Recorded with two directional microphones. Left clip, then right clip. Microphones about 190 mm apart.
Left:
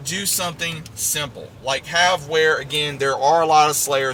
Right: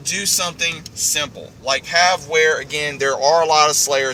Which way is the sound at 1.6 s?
25° left (ahead or behind).